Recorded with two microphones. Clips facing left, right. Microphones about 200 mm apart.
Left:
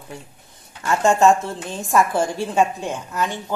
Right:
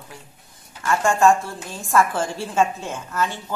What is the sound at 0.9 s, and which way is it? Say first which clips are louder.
A woman's voice: left 2 dB; 20° left (ahead or behind).